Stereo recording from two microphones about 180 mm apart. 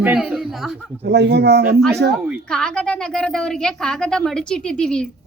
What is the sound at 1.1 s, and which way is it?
Speech, 70° right (ahead or behind).